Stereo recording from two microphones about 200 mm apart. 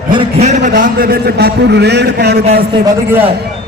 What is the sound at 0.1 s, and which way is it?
A man's voice, 30° right (ahead or behind).